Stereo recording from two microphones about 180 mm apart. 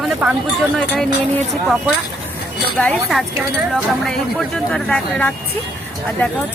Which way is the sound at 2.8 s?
5° left (ahead or behind).